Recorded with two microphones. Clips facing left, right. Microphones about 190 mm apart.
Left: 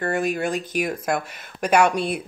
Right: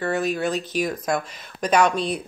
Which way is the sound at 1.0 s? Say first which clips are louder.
Even; 5° left (ahead or behind).